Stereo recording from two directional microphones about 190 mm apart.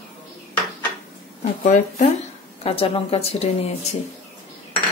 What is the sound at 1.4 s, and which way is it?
Speech, 40° left (ahead or behind).